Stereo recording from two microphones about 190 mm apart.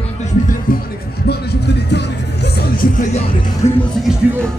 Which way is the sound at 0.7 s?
50° left (ahead or behind).